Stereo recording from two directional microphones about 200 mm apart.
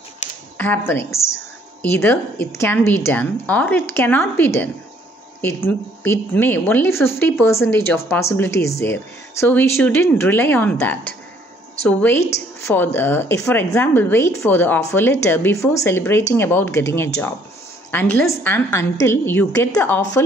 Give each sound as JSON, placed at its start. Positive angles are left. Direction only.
{"t": 0.6, "sound": "a woman's voice", "side_deg": 10}
{"t": 6.0, "sound": "a woman's voice", "side_deg": 10}